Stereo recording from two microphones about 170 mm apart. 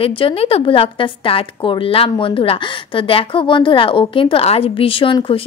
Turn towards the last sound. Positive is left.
turn(degrees=30)  # may be behind; listen again after turning